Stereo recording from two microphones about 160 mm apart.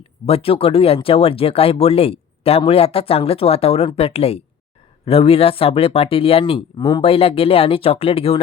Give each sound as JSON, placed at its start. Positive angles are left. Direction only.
{"t": 0.3, "sound": "speech", "side_deg": 35}